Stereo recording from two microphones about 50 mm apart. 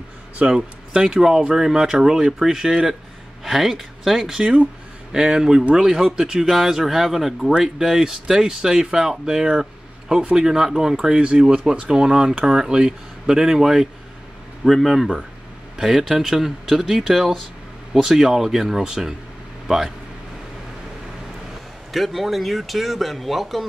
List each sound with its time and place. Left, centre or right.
0.6 s speech: centre
4.4 s speech: centre
11.2 s speech: right; by 17.4 s centre
17.9 s speech: centre
21.9 s speech: centre